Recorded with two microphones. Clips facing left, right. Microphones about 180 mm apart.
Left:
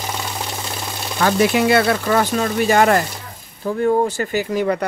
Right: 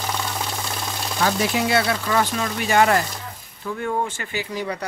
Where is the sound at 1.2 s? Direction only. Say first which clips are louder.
Left 6 dB; 60° left (ahead or behind).